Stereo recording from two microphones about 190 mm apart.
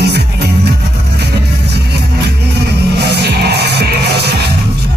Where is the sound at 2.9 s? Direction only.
60° right (ahead or behind).